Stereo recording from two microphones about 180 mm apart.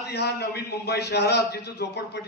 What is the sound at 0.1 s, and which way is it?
A man's voice, 65° left (ahead or behind).